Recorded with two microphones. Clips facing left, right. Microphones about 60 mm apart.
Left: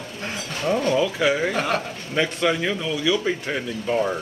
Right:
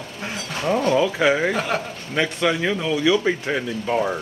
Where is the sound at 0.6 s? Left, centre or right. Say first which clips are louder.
Right 2 dB; centre.